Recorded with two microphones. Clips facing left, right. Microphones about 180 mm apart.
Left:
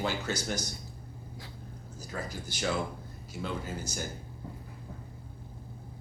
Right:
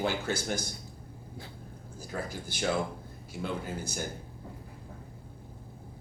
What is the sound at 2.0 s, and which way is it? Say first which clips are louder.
Speech: right 2 dB; 55° right (ahead or behind).